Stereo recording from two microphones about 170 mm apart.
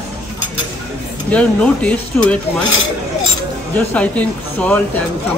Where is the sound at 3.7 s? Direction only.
10° left (ahead or behind).